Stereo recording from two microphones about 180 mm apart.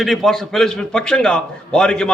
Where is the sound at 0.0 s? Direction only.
Centre (ahead or behind).